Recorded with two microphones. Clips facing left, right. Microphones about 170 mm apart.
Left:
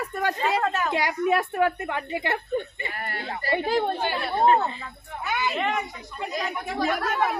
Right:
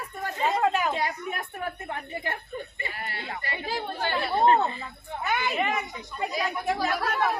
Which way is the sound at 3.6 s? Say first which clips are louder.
Left 8 dB; 55° left (ahead or behind).